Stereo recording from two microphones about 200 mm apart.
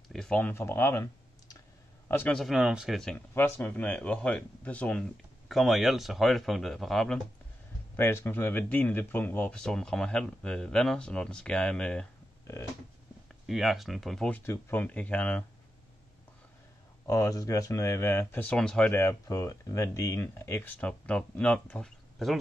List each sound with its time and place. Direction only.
0.1 s speech: 5° left (ahead or behind)
7.9 s speech: 10° left (ahead or behind)
17.0 s speech: 15° left (ahead or behind); by 22.4 s centre (ahead or behind)